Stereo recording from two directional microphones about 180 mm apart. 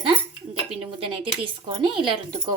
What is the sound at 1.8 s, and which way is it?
Speech, 30° right (ahead or behind).